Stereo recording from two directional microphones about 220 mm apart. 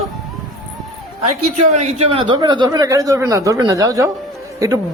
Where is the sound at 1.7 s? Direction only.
30° right (ahead or behind).